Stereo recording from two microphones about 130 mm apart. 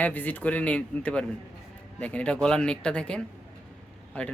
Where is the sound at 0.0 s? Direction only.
10° left (ahead or behind).